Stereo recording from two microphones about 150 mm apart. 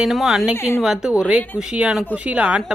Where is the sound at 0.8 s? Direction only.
5° right (ahead or behind).